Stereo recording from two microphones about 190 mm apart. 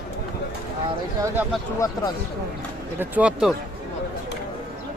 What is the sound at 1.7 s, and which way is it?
Speech, 20° left (ahead or behind).